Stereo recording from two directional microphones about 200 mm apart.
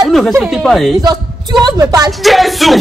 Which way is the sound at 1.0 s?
20° right (ahead or behind).